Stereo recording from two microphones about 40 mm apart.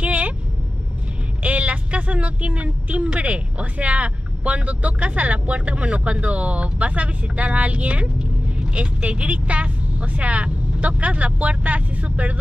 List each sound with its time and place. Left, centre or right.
0.0 s vehicle: right
1.4 s speech: right